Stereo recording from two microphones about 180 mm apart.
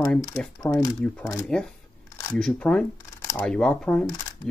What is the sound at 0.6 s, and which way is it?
Speech, 10° left (ahead or behind).